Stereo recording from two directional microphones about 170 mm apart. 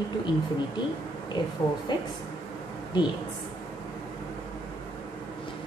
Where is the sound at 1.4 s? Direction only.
25° left (ahead or behind).